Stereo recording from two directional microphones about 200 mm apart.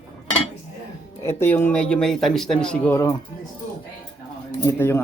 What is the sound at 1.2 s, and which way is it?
A man's voice, 10° left (ahead or behind).